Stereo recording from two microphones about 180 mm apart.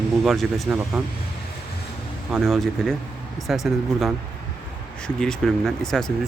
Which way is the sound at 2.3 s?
Centre (ahead or behind).